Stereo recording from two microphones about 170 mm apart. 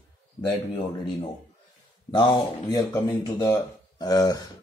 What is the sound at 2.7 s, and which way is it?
Speech, 20° left (ahead or behind).